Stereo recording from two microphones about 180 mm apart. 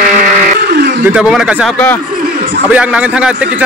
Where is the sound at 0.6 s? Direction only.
65° right (ahead or behind).